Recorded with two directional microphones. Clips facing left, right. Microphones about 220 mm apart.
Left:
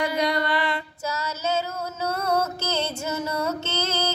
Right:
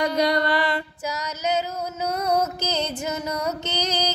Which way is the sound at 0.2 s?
40° right (ahead or behind).